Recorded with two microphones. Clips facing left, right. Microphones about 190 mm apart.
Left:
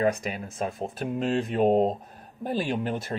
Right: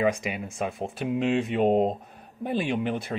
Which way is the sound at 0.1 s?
10° right (ahead or behind).